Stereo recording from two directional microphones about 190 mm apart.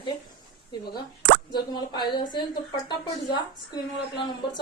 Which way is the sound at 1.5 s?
20° left (ahead or behind).